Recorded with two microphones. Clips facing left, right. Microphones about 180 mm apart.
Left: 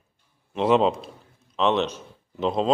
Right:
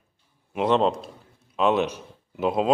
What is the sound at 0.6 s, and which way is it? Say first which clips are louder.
Speech: left 1 dB; centre (ahead or behind).